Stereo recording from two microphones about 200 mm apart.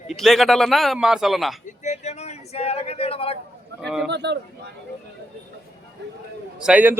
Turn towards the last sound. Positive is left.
turn(degrees=-5)  # may be behind; listen again after turning